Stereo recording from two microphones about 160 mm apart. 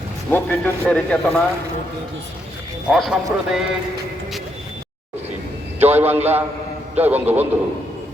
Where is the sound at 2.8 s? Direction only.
Centre (ahead or behind).